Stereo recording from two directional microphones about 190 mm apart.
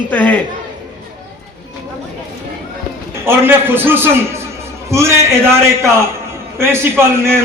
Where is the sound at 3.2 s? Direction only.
10° right (ahead or behind).